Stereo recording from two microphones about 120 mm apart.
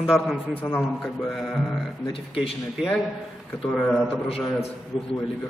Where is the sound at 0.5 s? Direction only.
15° left (ahead or behind).